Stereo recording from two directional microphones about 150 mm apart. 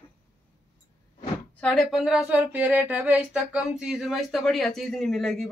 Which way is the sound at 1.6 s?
5° left (ahead or behind).